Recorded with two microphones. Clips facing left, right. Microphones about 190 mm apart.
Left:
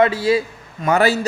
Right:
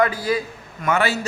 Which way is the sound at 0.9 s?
40° left (ahead or behind).